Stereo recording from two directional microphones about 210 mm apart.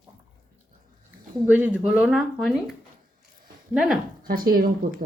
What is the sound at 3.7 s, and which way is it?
Speech, centre (ahead or behind).